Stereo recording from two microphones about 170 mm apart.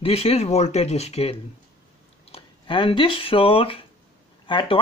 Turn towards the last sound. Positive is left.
turn(degrees=30)  # may be behind; listen again after turning